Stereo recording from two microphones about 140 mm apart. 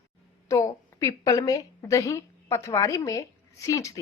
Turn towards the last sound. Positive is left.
turn(degrees=20)  # may be behind; listen again after turning